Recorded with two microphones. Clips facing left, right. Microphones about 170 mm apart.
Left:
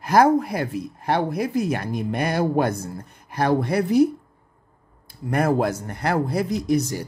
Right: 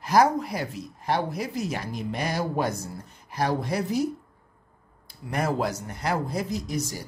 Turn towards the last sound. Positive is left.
turn(degrees=65)  # may be behind; listen again after turning